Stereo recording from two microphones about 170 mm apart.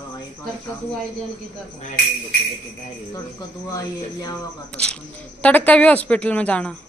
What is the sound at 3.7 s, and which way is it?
Speech, 20° left (ahead or behind).